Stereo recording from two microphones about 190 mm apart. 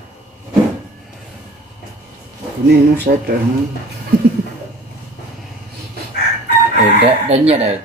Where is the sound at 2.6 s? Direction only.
60° right (ahead or behind).